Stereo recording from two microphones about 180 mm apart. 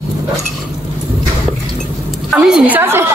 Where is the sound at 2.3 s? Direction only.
5° right (ahead or behind).